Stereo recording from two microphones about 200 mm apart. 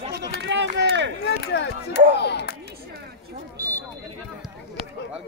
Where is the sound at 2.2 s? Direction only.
55° left (ahead or behind).